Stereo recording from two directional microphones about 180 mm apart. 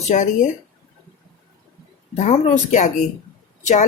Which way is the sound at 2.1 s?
40° left (ahead or behind).